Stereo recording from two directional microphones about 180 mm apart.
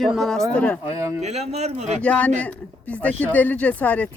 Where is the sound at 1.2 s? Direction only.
35° right (ahead or behind).